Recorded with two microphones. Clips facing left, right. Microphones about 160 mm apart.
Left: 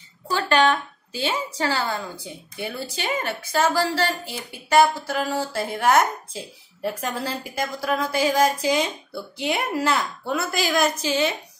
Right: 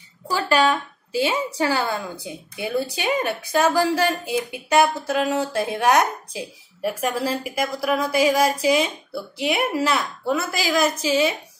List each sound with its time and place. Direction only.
0.3 s a woman's voice: 10° right (ahead or behind)
5.1 s a sound: 20° right (ahead or behind)
5.8 s speech: 15° right (ahead or behind)